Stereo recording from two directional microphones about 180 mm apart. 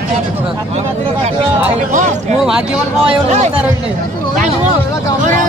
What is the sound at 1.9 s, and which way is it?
Speech, 40° right (ahead or behind).